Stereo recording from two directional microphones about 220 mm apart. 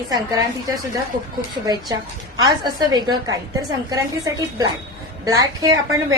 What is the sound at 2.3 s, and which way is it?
A woman's voice, 20° right (ahead or behind).